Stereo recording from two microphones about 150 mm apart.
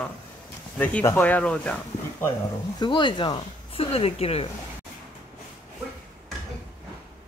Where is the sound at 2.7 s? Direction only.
30° left (ahead or behind).